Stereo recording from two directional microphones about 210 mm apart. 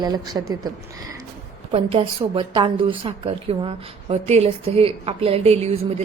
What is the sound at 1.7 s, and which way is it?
A woman's voice, 25° right (ahead or behind).